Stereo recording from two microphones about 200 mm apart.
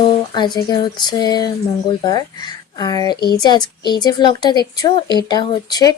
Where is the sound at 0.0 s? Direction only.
20° left (ahead or behind).